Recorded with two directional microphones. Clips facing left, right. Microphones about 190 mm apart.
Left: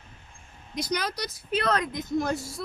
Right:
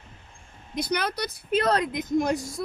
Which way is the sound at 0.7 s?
60° right (ahead or behind).